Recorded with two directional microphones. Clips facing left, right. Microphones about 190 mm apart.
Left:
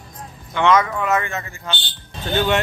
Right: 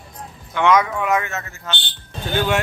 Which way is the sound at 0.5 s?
10° right (ahead or behind).